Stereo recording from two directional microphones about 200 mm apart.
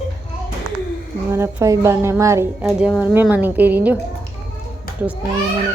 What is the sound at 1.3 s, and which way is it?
Speech, 15° right (ahead or behind).